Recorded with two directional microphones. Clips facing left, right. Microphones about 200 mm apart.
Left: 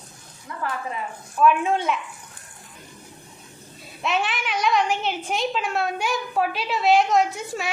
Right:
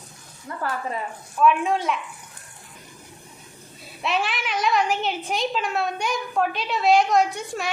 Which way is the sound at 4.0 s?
Centre (ahead or behind).